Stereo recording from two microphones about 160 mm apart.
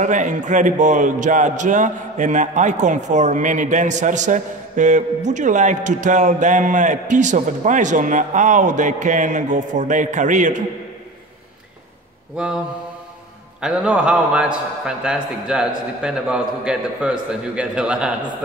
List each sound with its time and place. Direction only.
0.0 s a man's voice: 50° right (ahead or behind)
13.6 s a man's voice: 5° right (ahead or behind)